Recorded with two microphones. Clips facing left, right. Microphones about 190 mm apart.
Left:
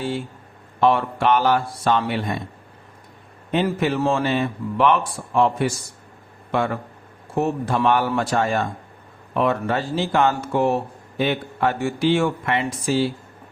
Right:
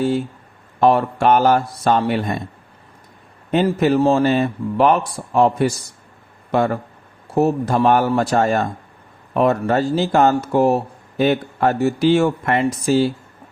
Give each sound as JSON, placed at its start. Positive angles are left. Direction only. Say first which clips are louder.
{"t": 0.8, "sound": "speech", "louder": "right 3 dB", "side_deg": -40}
{"t": 3.5, "sound": "a man's voice", "louder": "right 5 dB", "side_deg": -40}